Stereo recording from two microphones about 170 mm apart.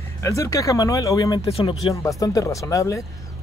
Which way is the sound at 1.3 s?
35° left (ahead or behind).